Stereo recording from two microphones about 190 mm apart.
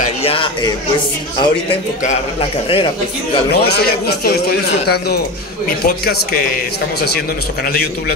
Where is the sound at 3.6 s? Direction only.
60° left (ahead or behind).